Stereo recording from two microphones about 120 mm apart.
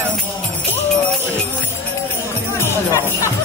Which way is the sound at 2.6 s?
25° left (ahead or behind).